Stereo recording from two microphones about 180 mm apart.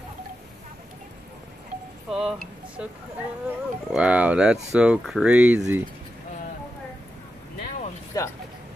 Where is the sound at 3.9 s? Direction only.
5° right (ahead or behind).